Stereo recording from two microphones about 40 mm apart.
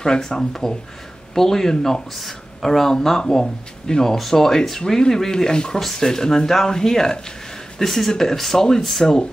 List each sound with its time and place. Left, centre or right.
0.0 s speech: centre